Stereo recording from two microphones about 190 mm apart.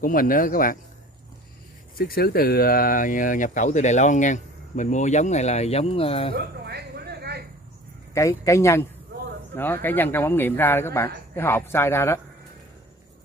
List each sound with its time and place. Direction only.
0.0 s speech: 45° left (ahead or behind)
2.0 s speech: 55° left (ahead or behind); by 6.3 s 30° left (ahead or behind)
6.3 s a sound: 60° right (ahead or behind)
8.1 s speech: 15° left (ahead or behind)